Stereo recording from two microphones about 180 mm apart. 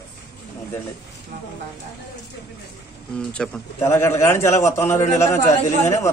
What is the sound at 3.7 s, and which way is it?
A man's voice, 15° left (ahead or behind).